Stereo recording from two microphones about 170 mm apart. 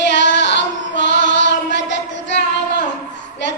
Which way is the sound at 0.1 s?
90° left.